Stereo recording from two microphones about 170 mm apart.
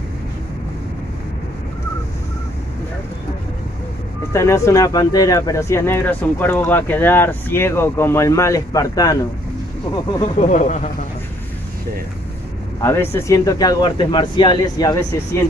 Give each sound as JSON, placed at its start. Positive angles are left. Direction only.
{"t": 4.3, "sound": "speech", "side_deg": 15}
{"t": 10.5, "sound": "speech", "side_deg": 45}
{"t": 12.8, "sound": "speech", "side_deg": 15}